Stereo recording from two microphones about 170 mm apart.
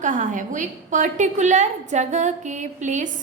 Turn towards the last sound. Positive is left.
turn(degrees=-45)  # may be behind; listen again after turning